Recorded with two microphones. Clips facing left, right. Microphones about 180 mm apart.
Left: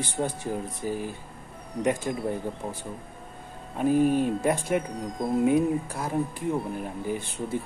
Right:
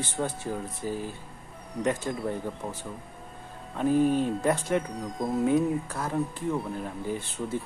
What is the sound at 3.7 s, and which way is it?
Speech, 10° left (ahead or behind).